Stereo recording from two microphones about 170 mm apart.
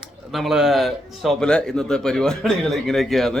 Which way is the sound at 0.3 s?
Centre (ahead or behind).